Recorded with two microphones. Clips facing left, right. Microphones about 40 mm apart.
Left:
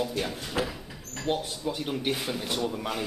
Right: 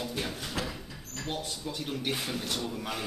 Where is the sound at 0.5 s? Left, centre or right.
Centre.